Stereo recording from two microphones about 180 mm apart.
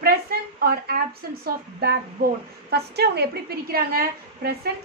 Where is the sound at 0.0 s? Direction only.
60° right (ahead or behind).